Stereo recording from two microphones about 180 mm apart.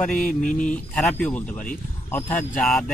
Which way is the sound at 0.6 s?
5° left (ahead or behind).